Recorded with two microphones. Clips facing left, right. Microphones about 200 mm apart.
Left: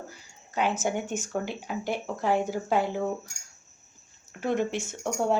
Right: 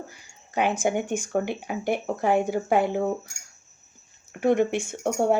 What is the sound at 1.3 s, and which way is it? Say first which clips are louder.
Speech: right 5 dB; 55° right (ahead or behind).